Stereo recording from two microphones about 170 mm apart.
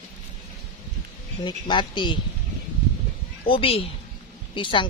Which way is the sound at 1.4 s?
30° left (ahead or behind).